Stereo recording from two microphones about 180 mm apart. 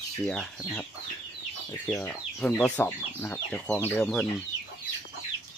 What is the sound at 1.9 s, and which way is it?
Speech, 10° left (ahead or behind).